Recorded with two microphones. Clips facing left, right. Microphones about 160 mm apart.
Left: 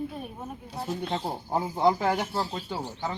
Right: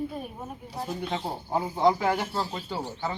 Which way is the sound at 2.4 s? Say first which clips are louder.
Even; 10° left (ahead or behind).